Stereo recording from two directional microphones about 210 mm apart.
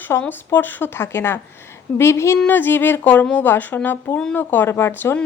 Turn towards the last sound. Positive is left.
turn(degrees=10)  # may be behind; listen again after turning